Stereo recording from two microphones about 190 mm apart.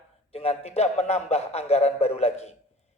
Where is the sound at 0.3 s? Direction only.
30° left (ahead or behind).